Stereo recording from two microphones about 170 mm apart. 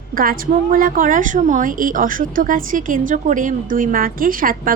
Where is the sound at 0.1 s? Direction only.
55° right (ahead or behind).